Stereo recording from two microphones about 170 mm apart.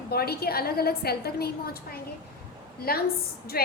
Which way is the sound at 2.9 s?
60° left (ahead or behind).